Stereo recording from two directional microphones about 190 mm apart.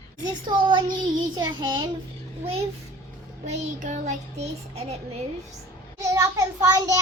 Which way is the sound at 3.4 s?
35° right (ahead or behind).